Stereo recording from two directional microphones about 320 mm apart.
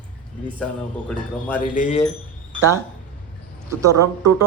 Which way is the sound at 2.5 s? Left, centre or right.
Centre.